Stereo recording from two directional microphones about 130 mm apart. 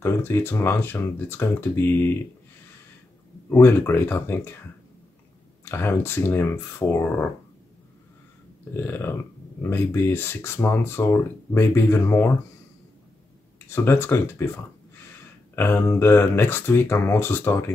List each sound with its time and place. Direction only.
0.0 s speech: 20° left (ahead or behind)
3.4 s speech: 15° left (ahead or behind)
5.7 s speech: 20° left (ahead or behind)
8.7 s speech: 15° left (ahead or behind)
13.7 s speech: 15° left (ahead or behind)